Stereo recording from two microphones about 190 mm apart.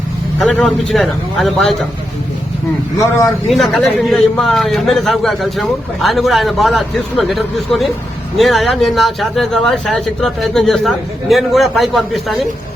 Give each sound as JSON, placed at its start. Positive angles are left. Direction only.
{"t": 0.3, "sound": "a man's voice", "side_deg": 5}
{"t": 3.0, "sound": "a man's voice", "side_deg": 15}
{"t": 3.5, "sound": "a man's voice", "side_deg": 0}